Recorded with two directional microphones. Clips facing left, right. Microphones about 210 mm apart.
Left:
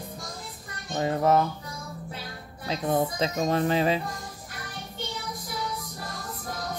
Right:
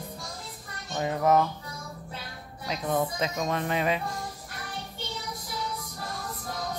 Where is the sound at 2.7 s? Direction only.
30° left (ahead or behind).